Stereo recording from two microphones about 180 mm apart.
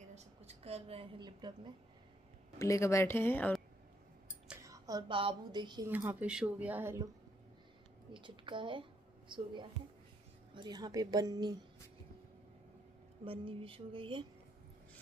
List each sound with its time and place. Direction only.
0.1 s a woman's voice: 35° right (ahead or behind)
2.6 s speech: 15° left (ahead or behind)
4.6 s a woman's voice: 20° right (ahead or behind)
5.9 s a woman's voice: 10° right (ahead or behind)
8.1 s a woman's voice: 25° right (ahead or behind)
13.2 s a woman's voice: 30° right (ahead or behind)